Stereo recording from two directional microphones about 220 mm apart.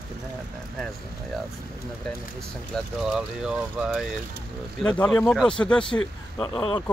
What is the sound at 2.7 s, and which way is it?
Speech, centre (ahead or behind).